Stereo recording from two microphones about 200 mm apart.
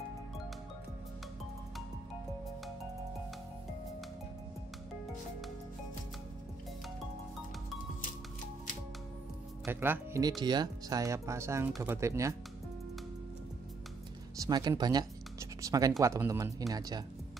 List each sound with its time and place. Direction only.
9.7 s speech: 10° right (ahead or behind)
14.4 s a sound: 20° right (ahead or behind)
16.0 s speech: 15° right (ahead or behind)